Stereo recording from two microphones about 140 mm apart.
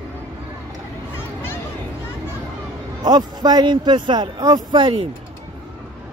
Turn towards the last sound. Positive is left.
turn(degrees=-35)  # may be behind; listen again after turning